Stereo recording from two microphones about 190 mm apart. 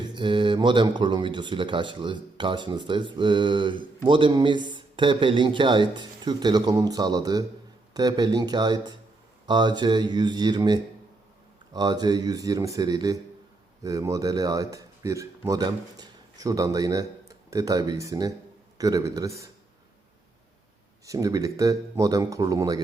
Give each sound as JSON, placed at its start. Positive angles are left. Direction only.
{"t": 0.0, "sound": "speech", "side_deg": -25}
{"t": 21.0, "sound": "speech", "side_deg": -20}